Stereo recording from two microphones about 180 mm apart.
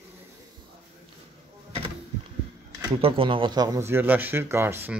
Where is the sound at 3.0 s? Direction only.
30° right (ahead or behind); by 4.9 s 15° right (ahead or behind).